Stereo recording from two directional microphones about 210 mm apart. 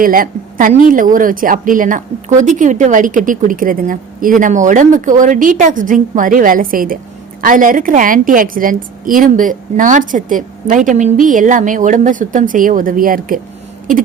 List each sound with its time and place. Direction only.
0.0 s a woman's voice: 40° right (ahead or behind)